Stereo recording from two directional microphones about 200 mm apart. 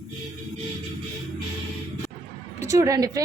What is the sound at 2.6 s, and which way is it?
Speech, 15° right (ahead or behind).